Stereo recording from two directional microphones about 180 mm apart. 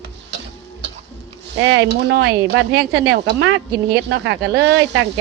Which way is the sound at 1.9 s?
70° right (ahead or behind).